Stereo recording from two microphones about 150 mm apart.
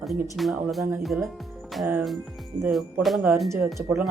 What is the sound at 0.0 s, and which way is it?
Speech, centre (ahead or behind).